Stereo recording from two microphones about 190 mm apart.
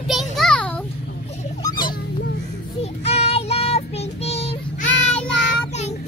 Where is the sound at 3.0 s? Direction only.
30° left (ahead or behind).